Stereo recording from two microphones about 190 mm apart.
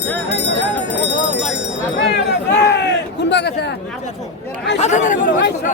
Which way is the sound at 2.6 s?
65° left (ahead or behind).